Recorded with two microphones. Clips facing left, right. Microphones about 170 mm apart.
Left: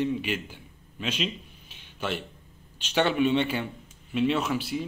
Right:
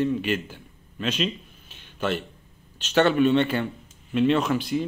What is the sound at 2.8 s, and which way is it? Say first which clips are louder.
Speech: right 4 dB; 10° left (ahead or behind).